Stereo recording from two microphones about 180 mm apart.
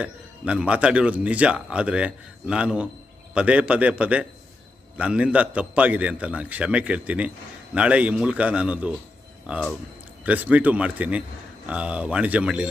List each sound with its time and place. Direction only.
0.0 s a man's voice: 5° right (ahead or behind)